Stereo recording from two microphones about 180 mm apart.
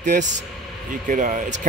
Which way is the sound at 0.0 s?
45° right (ahead or behind).